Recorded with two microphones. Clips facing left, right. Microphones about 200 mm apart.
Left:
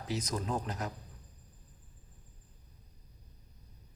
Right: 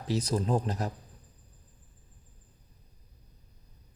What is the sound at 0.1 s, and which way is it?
Speech, 30° right (ahead or behind).